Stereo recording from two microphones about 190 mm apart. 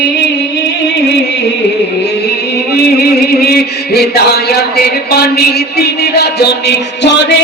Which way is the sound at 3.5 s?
55° left (ahead or behind).